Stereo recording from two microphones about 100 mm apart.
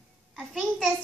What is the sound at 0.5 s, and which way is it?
Speech, centre (ahead or behind).